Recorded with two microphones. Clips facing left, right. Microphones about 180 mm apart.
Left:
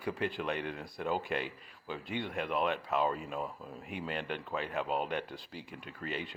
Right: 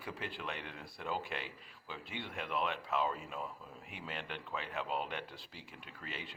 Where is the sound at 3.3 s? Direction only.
40° left (ahead or behind).